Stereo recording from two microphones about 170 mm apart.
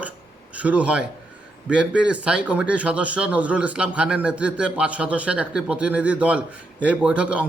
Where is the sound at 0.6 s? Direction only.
10° right (ahead or behind).